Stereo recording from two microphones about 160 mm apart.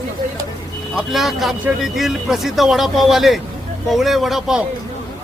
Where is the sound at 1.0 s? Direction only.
Centre (ahead or behind).